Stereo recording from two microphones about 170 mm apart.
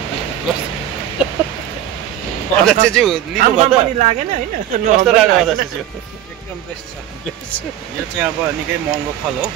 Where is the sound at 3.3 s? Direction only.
45° right (ahead or behind).